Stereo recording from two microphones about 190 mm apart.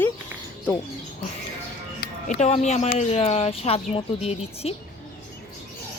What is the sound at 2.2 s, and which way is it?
Speech, 35° left (ahead or behind).